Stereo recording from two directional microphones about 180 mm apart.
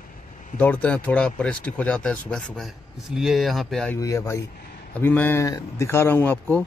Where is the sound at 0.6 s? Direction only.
10° left (ahead or behind).